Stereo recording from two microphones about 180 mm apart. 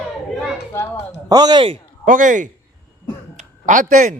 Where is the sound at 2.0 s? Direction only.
45° right (ahead or behind).